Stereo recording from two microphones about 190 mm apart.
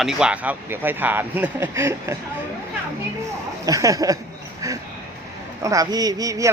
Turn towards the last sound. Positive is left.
turn(degrees=-20)  # may be behind; listen again after turning